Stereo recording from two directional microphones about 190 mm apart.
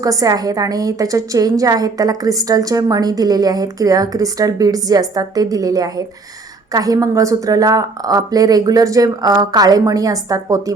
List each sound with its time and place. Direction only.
0.0 s a woman's voice: 20° right (ahead or behind)